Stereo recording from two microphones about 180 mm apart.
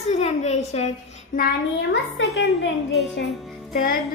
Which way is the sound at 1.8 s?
80° left.